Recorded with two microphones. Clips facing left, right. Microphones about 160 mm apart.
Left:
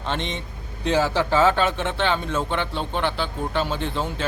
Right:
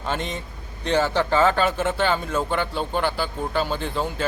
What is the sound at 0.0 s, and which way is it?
A man's voice, 5° right (ahead or behind).